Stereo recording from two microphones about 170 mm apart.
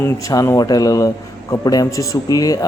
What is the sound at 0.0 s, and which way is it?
A man's voice, 20° left (ahead or behind).